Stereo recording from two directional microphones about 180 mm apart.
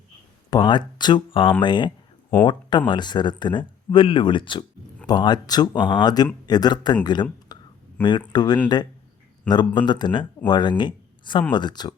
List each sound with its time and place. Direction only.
0.5 s speech: 25° left (ahead or behind)